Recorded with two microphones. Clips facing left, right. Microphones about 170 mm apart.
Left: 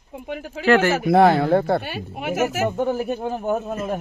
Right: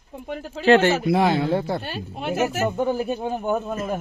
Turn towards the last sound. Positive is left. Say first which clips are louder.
# left 1 dB
turn(degrees=5)  # may be behind; listen again after turning